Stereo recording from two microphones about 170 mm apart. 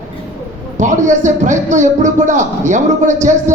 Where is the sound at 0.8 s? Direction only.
45° right (ahead or behind).